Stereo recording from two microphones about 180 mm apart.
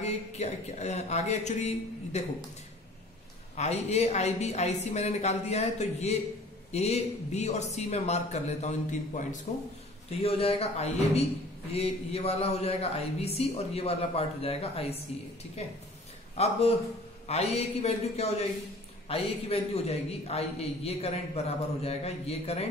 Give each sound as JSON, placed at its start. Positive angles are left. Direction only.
{"t": 0.0, "sound": "a woman's voice", "side_deg": 35}
{"t": 3.5, "sound": "a woman's voice", "side_deg": 35}
{"t": 16.3, "sound": "a woman's voice", "side_deg": 35}